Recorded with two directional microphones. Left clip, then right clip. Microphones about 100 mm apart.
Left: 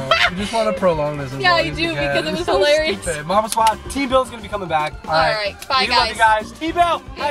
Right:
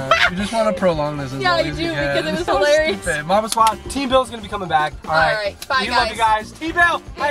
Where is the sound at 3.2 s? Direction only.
25° right (ahead or behind).